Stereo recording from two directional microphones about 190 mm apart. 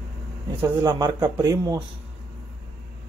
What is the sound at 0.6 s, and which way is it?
Speech, 20° right (ahead or behind).